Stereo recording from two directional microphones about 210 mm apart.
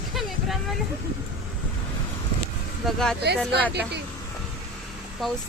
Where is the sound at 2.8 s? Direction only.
Centre (ahead or behind).